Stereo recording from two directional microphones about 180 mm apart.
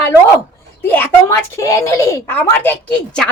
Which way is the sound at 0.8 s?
10° left (ahead or behind).